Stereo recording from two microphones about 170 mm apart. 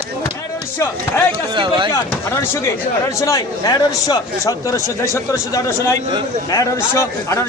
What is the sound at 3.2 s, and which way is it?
A man's voice, 20° left (ahead or behind).